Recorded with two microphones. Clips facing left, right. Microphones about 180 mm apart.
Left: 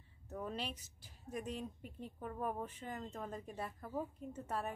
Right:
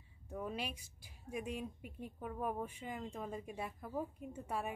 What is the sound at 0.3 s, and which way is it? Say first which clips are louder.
Speech: right 1 dB; 10° right (ahead or behind).